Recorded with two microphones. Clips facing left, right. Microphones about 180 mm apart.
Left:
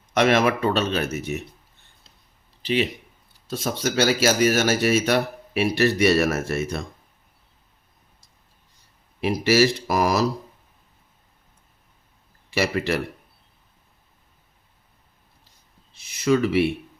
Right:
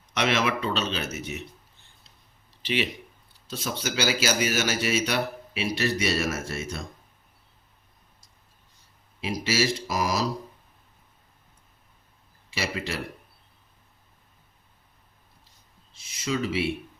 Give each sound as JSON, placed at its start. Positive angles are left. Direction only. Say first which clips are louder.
{"t": 0.1, "sound": "speech", "louder": "left 6 dB", "side_deg": 50}
{"t": 3.5, "sound": "speech", "louder": "left 6 dB", "side_deg": 50}
{"t": 9.2, "sound": "speech", "louder": "left 8 dB", "side_deg": 60}
{"t": 12.5, "sound": "speech", "louder": "left 8 dB", "side_deg": 55}
{"t": 15.9, "sound": "a sound", "louder": "left 9 dB", "side_deg": 60}